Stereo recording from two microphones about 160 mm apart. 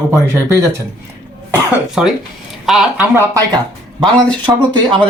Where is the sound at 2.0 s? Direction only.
5° right (ahead or behind).